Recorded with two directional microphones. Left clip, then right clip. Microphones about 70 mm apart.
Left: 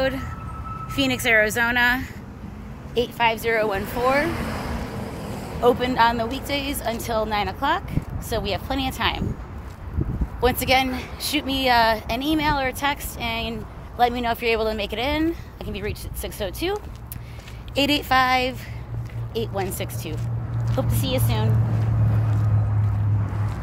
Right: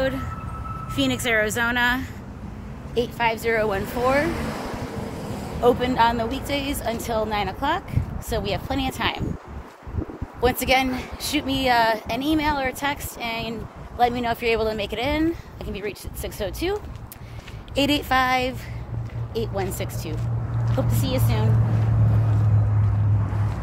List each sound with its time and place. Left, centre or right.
0.0 s speech: left
3.3 s a woman's voice: centre
4.2 s vehicle: left
5.6 s a woman's voice: centre
10.4 s a woman's voice: centre
21.6 s vehicle: left